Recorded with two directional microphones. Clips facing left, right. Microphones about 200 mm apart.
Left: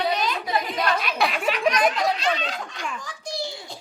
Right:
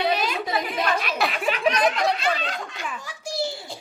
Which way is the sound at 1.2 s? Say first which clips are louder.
Left 1 dB; centre (ahead or behind).